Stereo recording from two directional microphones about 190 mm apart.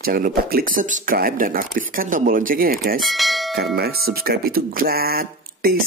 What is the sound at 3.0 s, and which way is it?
Speech, centre (ahead or behind).